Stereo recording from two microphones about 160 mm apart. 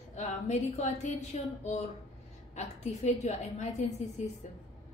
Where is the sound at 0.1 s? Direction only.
45° left (ahead or behind).